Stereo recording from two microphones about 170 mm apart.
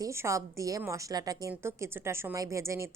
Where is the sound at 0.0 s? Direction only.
15° right (ahead or behind).